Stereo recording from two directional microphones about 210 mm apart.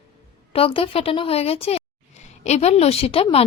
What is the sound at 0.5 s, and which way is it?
A woman's voice, 25° left (ahead or behind).